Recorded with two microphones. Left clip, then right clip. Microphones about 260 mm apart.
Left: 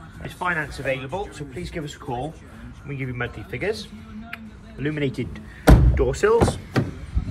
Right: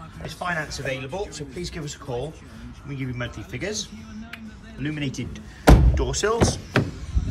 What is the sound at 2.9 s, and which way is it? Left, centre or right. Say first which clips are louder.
Speech: left 3 dB; centre.